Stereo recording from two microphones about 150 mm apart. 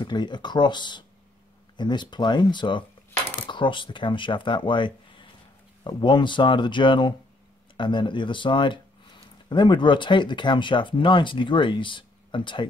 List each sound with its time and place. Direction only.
0.0 s speech: 30° left (ahead or behind)